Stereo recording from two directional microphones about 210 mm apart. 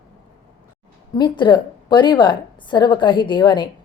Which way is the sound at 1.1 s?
20° left (ahead or behind).